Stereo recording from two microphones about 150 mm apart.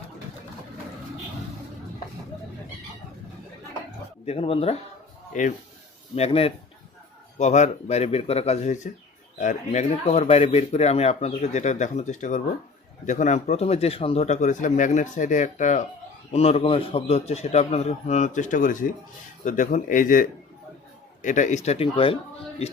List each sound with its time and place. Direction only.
4.3 s speech: 40° left (ahead or behind)
5.3 s speech: 55° left (ahead or behind)
6.1 s a man's voice: 40° left (ahead or behind)
16.3 s a man's voice: 45° left (ahead or behind)
21.9 s speech: 35° left (ahead or behind)